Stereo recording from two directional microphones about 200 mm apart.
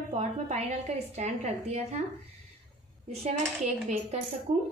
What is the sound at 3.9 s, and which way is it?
Speech, 40° right (ahead or behind).